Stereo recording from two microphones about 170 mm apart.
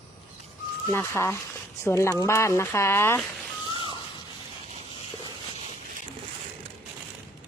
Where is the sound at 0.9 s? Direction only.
15° left (ahead or behind).